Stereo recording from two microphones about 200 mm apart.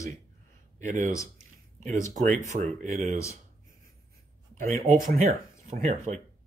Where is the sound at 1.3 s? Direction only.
35° right (ahead or behind).